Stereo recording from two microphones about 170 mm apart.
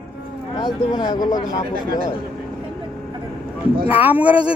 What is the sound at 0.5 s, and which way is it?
Speech, 25° left (ahead or behind).